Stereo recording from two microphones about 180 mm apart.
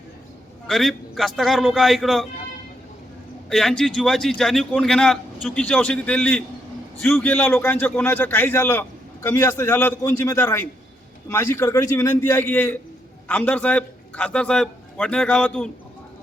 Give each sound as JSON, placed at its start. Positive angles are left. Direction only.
{"t": 0.7, "sound": "a man's voice", "side_deg": 0}
{"t": 3.5, "sound": "a man's voice", "side_deg": 0}